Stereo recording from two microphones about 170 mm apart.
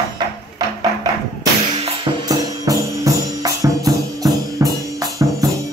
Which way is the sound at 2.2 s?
20° right (ahead or behind).